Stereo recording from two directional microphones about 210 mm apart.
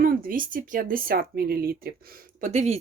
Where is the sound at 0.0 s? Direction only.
45° right (ahead or behind).